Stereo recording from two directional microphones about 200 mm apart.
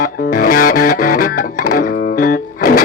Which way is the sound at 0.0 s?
50° left (ahead or behind).